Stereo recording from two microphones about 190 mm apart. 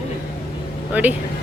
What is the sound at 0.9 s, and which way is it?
Speech, 10° right (ahead or behind).